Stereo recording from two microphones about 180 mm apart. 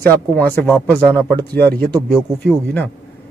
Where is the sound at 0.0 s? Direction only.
10° left (ahead or behind).